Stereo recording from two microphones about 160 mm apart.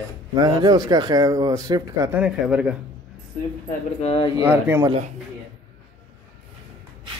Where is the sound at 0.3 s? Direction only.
25° right (ahead or behind).